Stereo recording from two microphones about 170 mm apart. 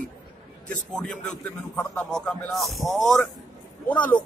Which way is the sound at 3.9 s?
10° left (ahead or behind).